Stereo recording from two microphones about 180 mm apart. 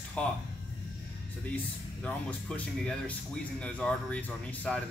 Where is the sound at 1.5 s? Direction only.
5° left (ahead or behind).